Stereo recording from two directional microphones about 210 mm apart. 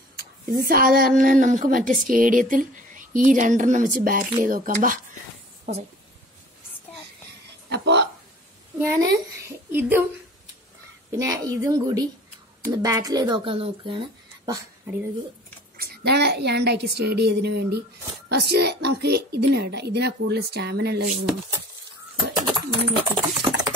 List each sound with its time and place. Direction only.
0.2 s a woman's voice: 45° right (ahead or behind)
7.7 s a sound: 55° right (ahead or behind)
8.7 s a woman's voice: 15° right (ahead or behind)
11.1 s a woman's voice: 15° right (ahead or behind)
15.8 s a woman's voice: 50° right (ahead or behind)
22.4 s bird: 20° right (ahead or behind)